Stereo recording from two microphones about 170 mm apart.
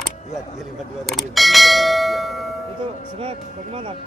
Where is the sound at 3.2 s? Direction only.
30° right (ahead or behind).